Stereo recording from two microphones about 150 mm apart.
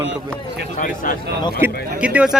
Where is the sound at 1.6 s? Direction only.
10° right (ahead or behind).